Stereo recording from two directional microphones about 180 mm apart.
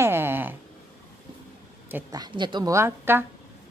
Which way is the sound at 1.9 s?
15° right (ahead or behind).